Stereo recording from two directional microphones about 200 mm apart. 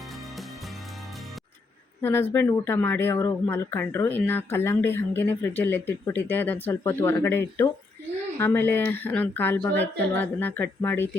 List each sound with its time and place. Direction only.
2.0 s speech: 10° left (ahead or behind)